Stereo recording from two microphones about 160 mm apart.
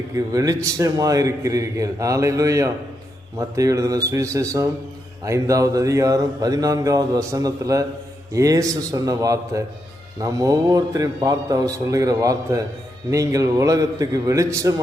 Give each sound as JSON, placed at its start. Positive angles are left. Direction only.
{"t": 0.1, "sound": "speech", "side_deg": -20}